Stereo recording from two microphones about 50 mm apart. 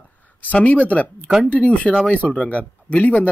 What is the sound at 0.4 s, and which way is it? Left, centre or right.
Speech, left.